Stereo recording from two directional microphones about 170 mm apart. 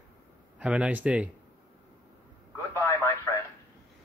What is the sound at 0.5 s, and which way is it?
Speech, 5° right (ahead or behind).